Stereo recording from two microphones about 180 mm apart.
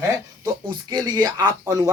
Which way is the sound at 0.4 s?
25° right (ahead or behind).